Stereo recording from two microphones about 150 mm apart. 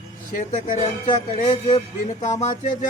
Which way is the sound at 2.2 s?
55° left (ahead or behind).